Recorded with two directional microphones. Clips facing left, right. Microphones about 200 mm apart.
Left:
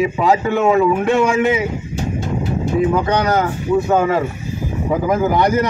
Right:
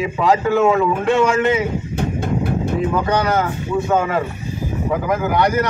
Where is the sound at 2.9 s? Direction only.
15° left (ahead or behind).